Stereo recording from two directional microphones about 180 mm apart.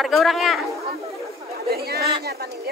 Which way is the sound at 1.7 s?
60° right (ahead or behind).